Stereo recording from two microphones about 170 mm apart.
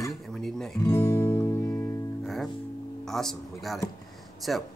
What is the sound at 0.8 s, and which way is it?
Music, 15° left (ahead or behind).